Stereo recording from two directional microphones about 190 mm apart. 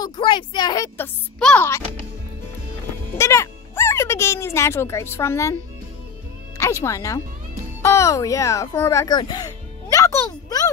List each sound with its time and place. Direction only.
0.0 s speech: 25° left (ahead or behind)
0.9 s speech: 10° left (ahead or behind)
3.2 s speech: 15° left (ahead or behind)
6.6 s speech: 15° left (ahead or behind)
9.9 s music: 15° left (ahead or behind)